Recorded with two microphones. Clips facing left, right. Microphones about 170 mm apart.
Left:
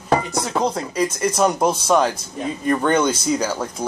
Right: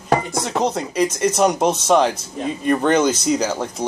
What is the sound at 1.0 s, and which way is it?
Speech, 75° right (ahead or behind).